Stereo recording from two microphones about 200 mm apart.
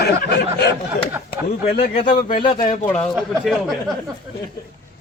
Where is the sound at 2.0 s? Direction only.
45° left (ahead or behind).